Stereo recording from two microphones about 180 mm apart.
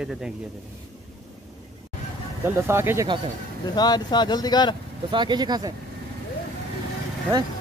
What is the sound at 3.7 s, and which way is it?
Speech, 20° left (ahead or behind).